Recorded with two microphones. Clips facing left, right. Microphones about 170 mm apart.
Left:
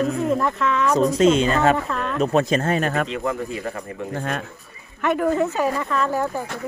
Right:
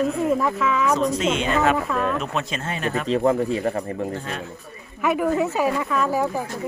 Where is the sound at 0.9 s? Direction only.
40° left (ahead or behind).